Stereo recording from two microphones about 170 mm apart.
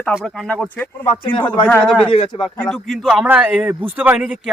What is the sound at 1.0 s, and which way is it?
Speech, 30° left (ahead or behind).